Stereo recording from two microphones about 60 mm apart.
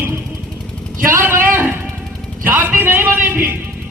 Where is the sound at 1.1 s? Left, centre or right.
Right.